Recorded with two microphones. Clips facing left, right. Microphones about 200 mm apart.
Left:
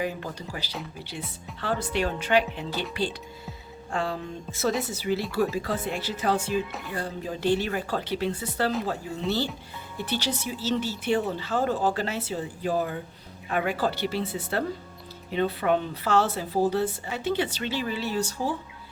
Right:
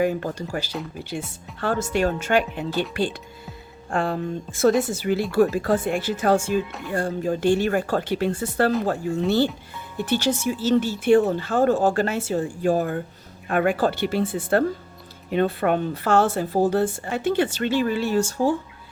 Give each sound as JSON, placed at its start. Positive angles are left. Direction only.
{"t": 0.0, "sound": "a woman's voice", "side_deg": -50}
{"t": 6.7, "sound": "speech", "side_deg": 0}
{"t": 6.9, "sound": "a woman's voice", "side_deg": -50}